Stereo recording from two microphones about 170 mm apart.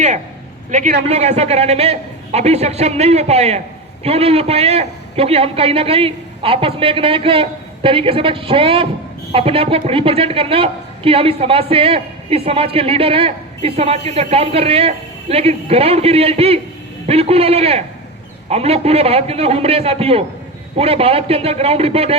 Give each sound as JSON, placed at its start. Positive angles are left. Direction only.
{"t": 0.7, "sound": "a man's voice", "side_deg": -45}